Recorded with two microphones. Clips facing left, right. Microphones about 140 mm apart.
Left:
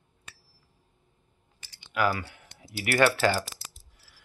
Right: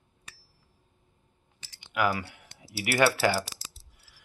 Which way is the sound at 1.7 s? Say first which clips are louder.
Left 1 dB; 20° right (ahead or behind).